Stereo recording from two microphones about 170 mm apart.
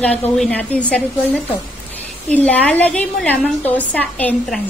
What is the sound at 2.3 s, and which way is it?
A woman's voice, 10° left (ahead or behind).